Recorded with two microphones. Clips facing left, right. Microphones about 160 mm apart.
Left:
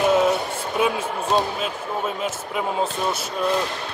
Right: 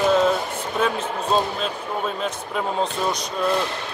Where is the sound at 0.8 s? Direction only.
10° left (ahead or behind).